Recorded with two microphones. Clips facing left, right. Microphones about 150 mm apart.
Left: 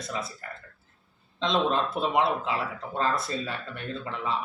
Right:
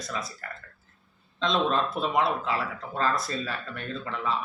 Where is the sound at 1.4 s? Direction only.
25° left (ahead or behind).